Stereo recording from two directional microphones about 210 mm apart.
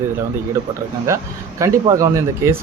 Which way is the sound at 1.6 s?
15° right (ahead or behind).